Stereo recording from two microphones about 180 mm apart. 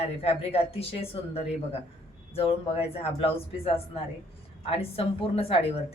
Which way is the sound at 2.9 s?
30° left (ahead or behind).